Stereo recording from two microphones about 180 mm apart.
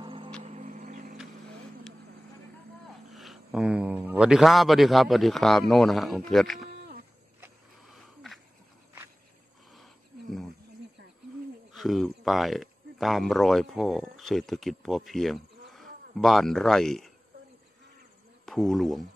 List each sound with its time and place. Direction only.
0.0 s music: 30° right (ahead or behind); by 1.1 s 45° right (ahead or behind)
3.1 s a man's voice: centre (ahead or behind)
7.9 s wheeze: centre (ahead or behind)
11.7 s speech: centre (ahead or behind)
18.4 s speech: centre (ahead or behind)